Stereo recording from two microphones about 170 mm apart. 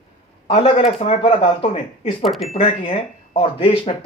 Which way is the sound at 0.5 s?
35° left (ahead or behind).